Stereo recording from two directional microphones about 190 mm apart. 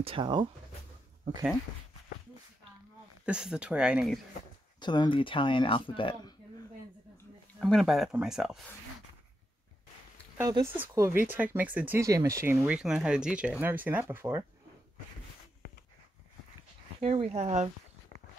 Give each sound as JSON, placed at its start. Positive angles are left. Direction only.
{"t": 0.0, "sound": "speech", "side_deg": -25}
{"t": 3.3, "sound": "speech", "side_deg": -5}
{"t": 4.7, "sound": "speech", "side_deg": 25}
{"t": 7.5, "sound": "speech", "side_deg": 0}
{"t": 10.3, "sound": "speech", "side_deg": -20}
{"t": 17.0, "sound": "speech", "side_deg": -35}